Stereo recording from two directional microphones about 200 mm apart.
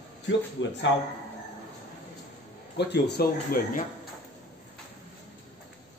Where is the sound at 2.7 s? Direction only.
60° left (ahead or behind).